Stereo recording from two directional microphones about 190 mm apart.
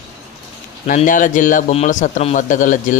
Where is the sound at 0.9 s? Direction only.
45° left (ahead or behind).